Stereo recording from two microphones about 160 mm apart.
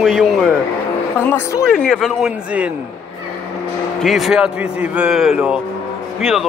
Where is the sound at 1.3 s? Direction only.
20° left (ahead or behind).